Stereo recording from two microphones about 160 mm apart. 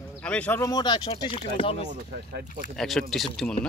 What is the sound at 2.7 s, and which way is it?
Speech, centre (ahead or behind).